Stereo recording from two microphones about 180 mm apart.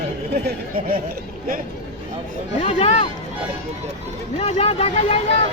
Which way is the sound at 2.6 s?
35° left (ahead or behind).